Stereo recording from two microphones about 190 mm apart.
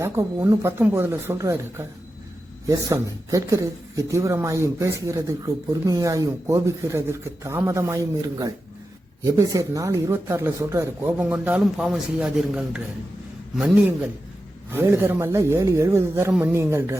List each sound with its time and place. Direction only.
0.0 s speech: 15° right (ahead or behind)